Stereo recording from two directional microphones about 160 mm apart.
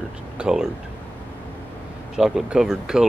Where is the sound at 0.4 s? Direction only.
5° right (ahead or behind).